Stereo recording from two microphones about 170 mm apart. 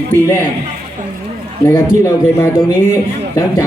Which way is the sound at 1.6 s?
20° left (ahead or behind).